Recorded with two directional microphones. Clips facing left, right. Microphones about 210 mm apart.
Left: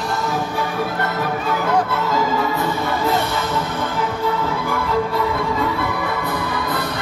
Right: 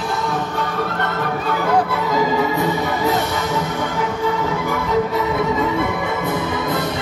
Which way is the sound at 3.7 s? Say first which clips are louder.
Right 1 dB; 5° left (ahead or behind).